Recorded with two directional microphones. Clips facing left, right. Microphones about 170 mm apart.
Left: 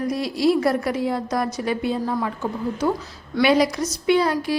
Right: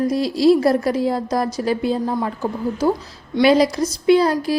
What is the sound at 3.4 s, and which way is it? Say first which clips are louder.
A woman's voice: right 4 dB; 35° right (ahead or behind).